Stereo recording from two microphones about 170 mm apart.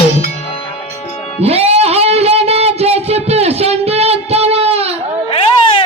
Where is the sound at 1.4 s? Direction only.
35° right (ahead or behind).